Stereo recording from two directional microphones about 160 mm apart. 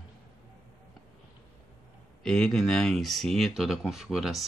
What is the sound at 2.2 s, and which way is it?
Speech, 5° left (ahead or behind).